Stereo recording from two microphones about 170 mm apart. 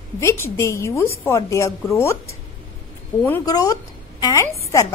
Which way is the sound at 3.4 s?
20° left (ahead or behind).